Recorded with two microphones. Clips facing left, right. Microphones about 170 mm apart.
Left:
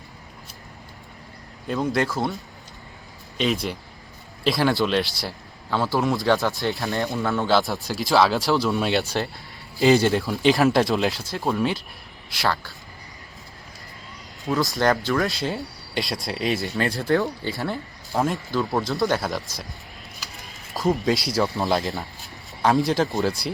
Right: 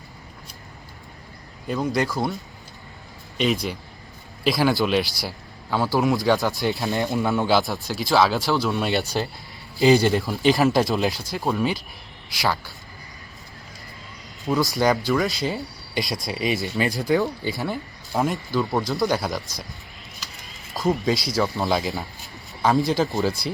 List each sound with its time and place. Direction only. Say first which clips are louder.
1.6 s speech: even; centre (ahead or behind)
6.8 s speech: right 2 dB; 15° right (ahead or behind)
7.5 s speech: even; centre (ahead or behind)
14.4 s speech: right 1 dB; centre (ahead or behind)
20.9 s speech: even; centre (ahead or behind)